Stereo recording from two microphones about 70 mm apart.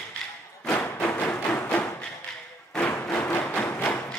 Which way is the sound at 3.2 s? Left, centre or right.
Left.